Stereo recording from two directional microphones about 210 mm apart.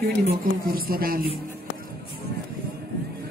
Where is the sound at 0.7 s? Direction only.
45° right (ahead or behind).